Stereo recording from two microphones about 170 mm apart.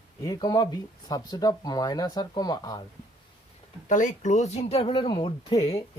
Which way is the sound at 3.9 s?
45° left (ahead or behind).